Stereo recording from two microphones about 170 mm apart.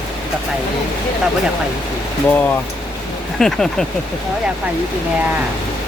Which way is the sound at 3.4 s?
5° left (ahead or behind).